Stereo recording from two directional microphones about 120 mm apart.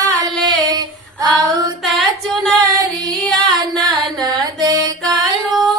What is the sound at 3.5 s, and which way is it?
Music, 35° right (ahead or behind).